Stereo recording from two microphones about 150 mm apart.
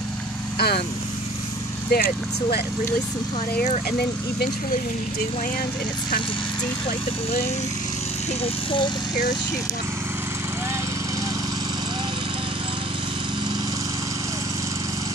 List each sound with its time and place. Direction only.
0.6 s speech: 90° left
1.9 s speech: 85° left